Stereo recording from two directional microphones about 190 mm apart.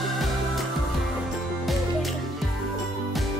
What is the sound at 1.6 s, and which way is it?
Music, centre (ahead or behind).